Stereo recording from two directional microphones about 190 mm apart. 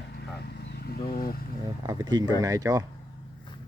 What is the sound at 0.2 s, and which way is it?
Vehicle, 60° left (ahead or behind).